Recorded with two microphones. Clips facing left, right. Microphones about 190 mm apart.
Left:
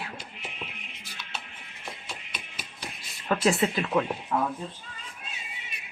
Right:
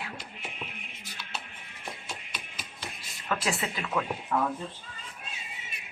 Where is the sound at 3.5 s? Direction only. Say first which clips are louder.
Left 11 dB; 35° left (ahead or behind).